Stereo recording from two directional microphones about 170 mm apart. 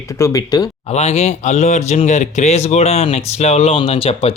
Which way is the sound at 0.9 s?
40° left (ahead or behind).